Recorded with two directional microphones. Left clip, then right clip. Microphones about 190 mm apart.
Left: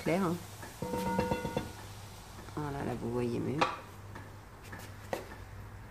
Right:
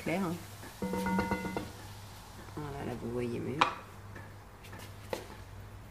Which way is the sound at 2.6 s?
15° left (ahead or behind).